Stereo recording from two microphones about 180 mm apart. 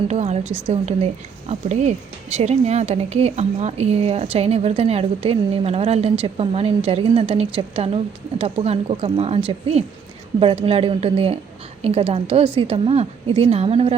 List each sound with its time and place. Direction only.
0.1 s speech: 40° right (ahead or behind)